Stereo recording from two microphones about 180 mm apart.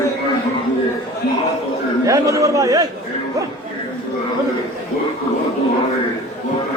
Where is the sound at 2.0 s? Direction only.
15° right (ahead or behind).